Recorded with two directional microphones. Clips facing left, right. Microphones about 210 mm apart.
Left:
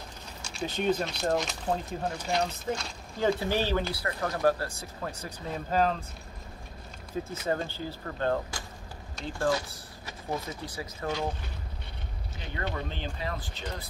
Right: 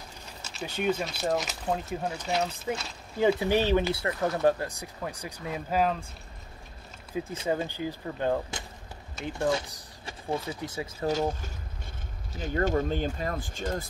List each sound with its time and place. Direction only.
0.4 s speech: 5° right (ahead or behind)
7.4 s speech: 15° right (ahead or behind)
11.1 s speech: 45° right (ahead or behind)